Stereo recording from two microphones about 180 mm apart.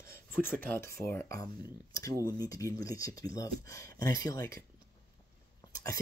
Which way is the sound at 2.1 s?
20° left (ahead or behind).